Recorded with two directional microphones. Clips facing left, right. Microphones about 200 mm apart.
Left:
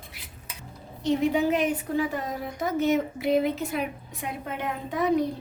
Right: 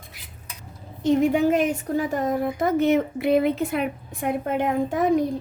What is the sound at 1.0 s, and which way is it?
A woman's voice, 50° right (ahead or behind).